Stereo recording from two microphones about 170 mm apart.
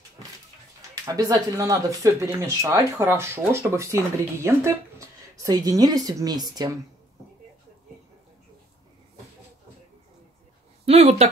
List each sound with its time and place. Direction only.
1.0 s a woman's voice: 20° right (ahead or behind)
10.9 s speech: 40° right (ahead or behind)